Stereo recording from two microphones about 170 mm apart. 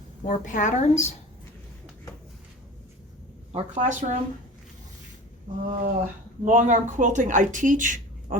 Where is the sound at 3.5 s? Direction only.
45° right (ahead or behind).